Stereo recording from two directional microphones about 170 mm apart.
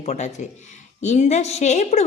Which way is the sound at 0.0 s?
40° left (ahead or behind).